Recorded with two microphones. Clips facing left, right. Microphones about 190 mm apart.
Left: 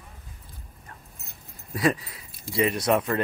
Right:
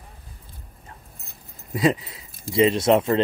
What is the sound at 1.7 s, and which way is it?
Speech, 20° right (ahead or behind).